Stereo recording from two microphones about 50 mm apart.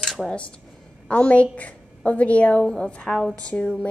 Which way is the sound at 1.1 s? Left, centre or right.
Left.